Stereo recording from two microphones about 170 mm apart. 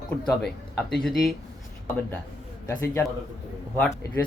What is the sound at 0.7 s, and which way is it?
Speech, centre (ahead or behind).